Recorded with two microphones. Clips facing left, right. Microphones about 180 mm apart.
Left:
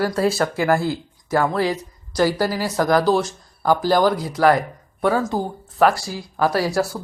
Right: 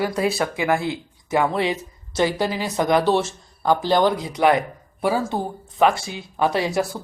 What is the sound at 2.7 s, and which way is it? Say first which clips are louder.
Speech: left 1 dB; 20° right (ahead or behind).